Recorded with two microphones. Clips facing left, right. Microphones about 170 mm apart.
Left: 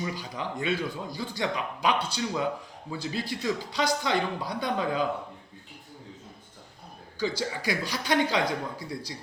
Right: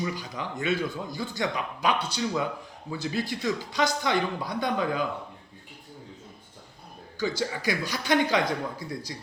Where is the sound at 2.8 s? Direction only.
30° left (ahead or behind).